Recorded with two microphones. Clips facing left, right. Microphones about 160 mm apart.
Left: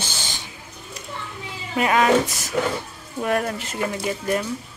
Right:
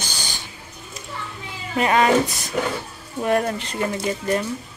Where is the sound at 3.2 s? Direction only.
Centre (ahead or behind).